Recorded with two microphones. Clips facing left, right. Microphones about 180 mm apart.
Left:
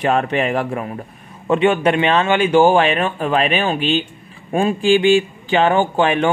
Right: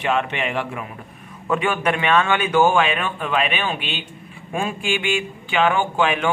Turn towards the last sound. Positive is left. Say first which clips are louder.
# left 4 dB
turn(degrees=40)  # may be behind; listen again after turning